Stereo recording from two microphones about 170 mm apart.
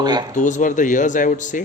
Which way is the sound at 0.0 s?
25° right (ahead or behind).